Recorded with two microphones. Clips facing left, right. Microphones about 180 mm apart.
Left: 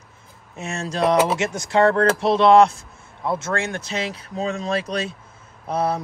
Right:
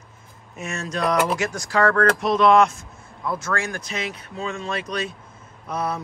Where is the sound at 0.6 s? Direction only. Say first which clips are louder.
Left 3 dB; 30° left (ahead or behind).